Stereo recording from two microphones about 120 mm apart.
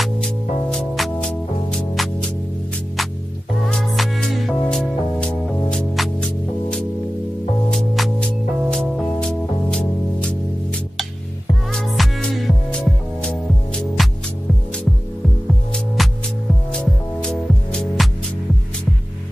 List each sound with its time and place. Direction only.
0.0 s music: 5° left (ahead or behind)
3.6 s music: centre (ahead or behind)
11.7 s music: 5° left (ahead or behind)
16.0 s music: centre (ahead or behind)